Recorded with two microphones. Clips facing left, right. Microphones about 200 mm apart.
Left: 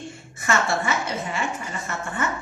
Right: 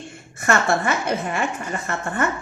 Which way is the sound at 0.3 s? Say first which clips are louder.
Right 4 dB; 55° right (ahead or behind).